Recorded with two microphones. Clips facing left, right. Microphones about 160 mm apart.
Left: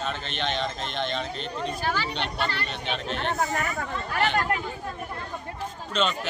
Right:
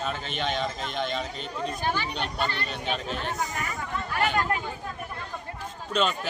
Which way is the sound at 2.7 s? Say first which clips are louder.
Even; 5° right (ahead or behind).